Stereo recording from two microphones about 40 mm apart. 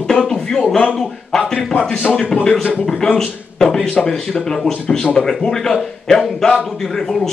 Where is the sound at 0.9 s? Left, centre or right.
Centre.